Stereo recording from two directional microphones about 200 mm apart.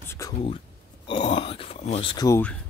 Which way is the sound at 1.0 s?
30° left (ahead or behind).